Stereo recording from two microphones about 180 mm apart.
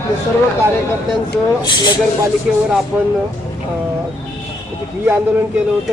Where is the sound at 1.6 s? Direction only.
25° left (ahead or behind).